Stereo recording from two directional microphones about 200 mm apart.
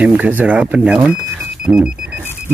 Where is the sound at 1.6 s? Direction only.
5° right (ahead or behind).